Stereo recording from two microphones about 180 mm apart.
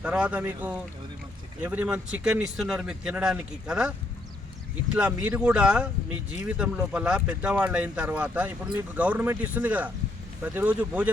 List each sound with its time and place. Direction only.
0.0 s speech: 5° right (ahead or behind)
4.9 s speech: 10° right (ahead or behind)